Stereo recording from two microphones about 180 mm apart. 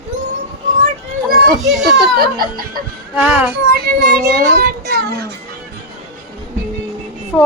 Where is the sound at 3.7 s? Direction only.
60° right (ahead or behind).